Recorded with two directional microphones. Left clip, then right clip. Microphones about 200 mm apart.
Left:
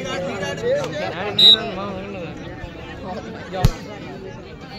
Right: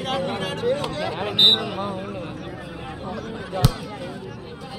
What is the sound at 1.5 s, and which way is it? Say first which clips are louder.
Speech: left 6 dB; 40° left (ahead or behind).